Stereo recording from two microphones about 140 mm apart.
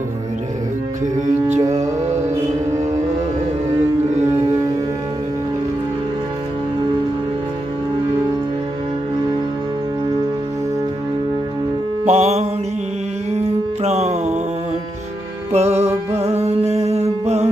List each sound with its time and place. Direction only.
12.0 s mantra: 55° right (ahead or behind)
13.8 s music: 50° right (ahead or behind)
15.5 s music: 50° right (ahead or behind)